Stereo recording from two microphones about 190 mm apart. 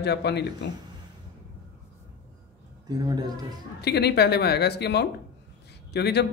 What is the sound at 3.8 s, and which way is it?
A man's voice, 60° left (ahead or behind).